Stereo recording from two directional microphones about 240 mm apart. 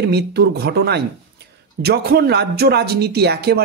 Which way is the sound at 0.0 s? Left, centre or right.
Right.